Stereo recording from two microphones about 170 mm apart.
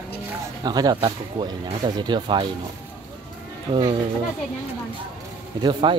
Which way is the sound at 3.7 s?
30° right (ahead or behind).